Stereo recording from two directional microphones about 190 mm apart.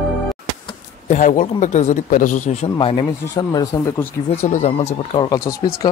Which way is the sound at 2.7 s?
25° left (ahead or behind).